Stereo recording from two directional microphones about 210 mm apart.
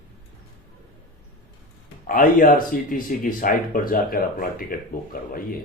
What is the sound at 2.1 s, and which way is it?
Speech, 40° left (ahead or behind).